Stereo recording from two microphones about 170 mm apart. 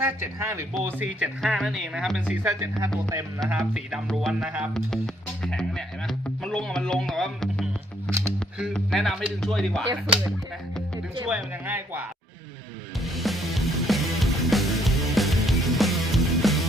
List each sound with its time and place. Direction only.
0.0 s speech: 15° right (ahead or behind)
5.5 s music: 5° left (ahead or behind)
8.5 s a man's voice: centre (ahead or behind)
11.3 s speech: 10° right (ahead or behind)
13.1 s music: centre (ahead or behind)